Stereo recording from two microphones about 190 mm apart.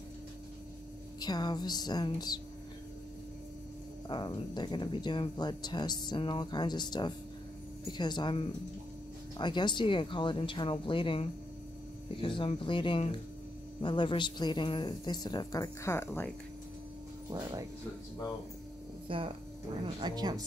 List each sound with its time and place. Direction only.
1.2 s speech: 20° left (ahead or behind)
4.1 s speech: 25° left (ahead or behind)
17.3 s speech: 15° right (ahead or behind)
19.0 s speech: 30° right (ahead or behind)